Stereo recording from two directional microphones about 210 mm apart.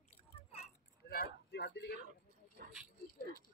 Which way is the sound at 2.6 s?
45° right (ahead or behind).